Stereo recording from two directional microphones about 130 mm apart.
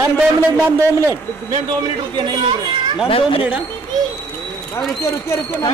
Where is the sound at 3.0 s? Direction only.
45° left (ahead or behind).